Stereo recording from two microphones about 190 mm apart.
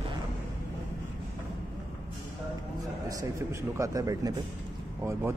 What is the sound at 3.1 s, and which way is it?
Speech, 15° right (ahead or behind).